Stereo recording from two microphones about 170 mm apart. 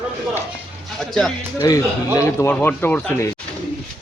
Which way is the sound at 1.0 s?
Centre (ahead or behind).